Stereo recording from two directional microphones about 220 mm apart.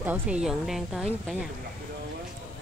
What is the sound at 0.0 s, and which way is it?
Speech, 5° right (ahead or behind).